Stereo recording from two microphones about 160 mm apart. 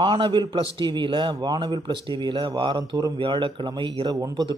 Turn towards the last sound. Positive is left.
turn(degrees=-25)  # may be behind; listen again after turning